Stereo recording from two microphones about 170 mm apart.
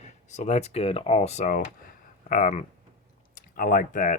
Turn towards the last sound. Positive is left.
turn(degrees=50)  # may be behind; listen again after turning